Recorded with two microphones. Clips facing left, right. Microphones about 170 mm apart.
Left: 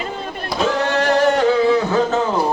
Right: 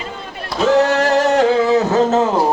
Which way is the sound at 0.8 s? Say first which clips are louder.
Right 1 dB; 40° right (ahead or behind).